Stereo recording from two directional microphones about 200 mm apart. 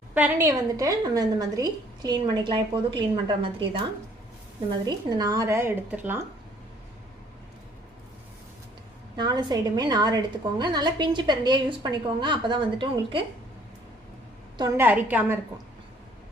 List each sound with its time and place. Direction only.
0.1 s a woman's voice: 10° right (ahead or behind); by 3.7 s 25° right (ahead or behind)
4.7 s speech: 20° right (ahead or behind)
9.1 s a woman's voice: 20° right (ahead or behind)
14.6 s speech: 10° right (ahead or behind)